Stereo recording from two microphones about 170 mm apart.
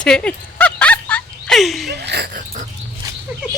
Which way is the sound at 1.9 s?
75° right (ahead or behind).